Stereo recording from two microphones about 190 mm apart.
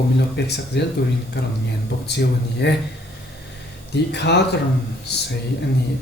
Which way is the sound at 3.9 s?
60° left (ahead or behind).